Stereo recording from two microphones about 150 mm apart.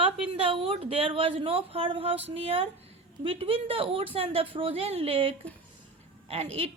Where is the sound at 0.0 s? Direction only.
35° right (ahead or behind).